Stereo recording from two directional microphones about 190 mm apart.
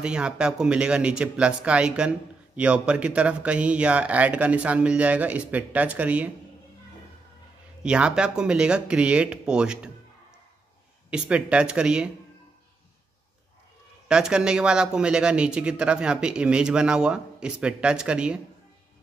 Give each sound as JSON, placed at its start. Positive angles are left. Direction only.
{"t": 0.0, "sound": "speech", "side_deg": -5}
{"t": 7.8, "sound": "speech", "side_deg": -5}
{"t": 11.1, "sound": "speech", "side_deg": -5}
{"t": 14.0, "sound": "speech", "side_deg": -5}